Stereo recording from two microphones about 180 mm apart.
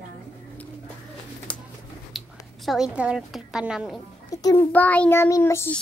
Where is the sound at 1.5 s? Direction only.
5° left (ahead or behind).